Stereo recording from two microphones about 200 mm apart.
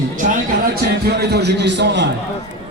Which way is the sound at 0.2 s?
45° right (ahead or behind).